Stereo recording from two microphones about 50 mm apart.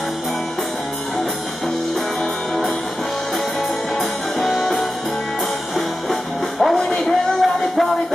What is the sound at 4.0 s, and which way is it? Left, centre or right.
Music, centre.